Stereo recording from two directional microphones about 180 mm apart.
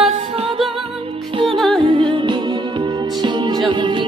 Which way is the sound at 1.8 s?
30° right (ahead or behind).